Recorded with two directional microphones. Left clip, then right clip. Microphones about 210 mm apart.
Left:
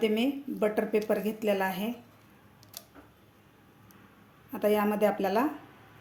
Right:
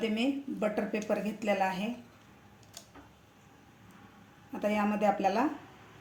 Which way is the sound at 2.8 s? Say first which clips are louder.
Left 3 dB; 30° left (ahead or behind).